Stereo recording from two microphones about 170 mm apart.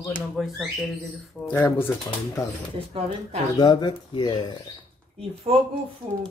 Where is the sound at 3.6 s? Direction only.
25° left (ahead or behind).